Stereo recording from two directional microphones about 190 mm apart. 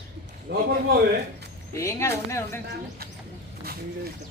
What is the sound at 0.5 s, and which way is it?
Speech, 60° right (ahead or behind).